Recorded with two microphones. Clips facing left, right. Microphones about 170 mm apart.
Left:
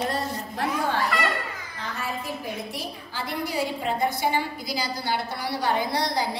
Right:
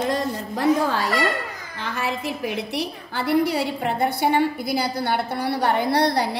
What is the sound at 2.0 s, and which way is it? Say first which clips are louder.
A woman's voice: right 6 dB; 75° right (ahead or behind).